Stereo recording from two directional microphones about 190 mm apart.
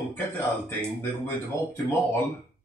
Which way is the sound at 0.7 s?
10° left (ahead or behind).